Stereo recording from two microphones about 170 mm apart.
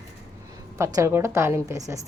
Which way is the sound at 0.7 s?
15° right (ahead or behind).